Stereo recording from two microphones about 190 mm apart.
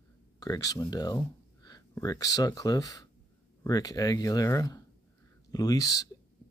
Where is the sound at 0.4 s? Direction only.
20° left (ahead or behind).